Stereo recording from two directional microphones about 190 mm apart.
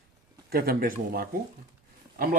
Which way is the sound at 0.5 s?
50° right (ahead or behind).